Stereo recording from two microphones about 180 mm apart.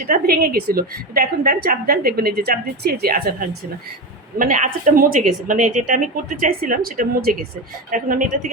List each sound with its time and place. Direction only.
0.0 s a woman's voice: 55° right (ahead or behind)
4.4 s a woman's voice: 45° right (ahead or behind)